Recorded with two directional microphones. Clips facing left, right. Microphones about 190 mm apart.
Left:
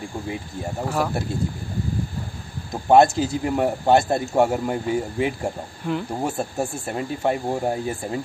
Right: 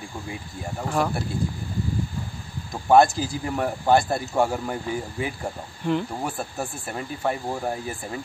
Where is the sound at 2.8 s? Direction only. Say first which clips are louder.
Left 2 dB; 25° left (ahead or behind).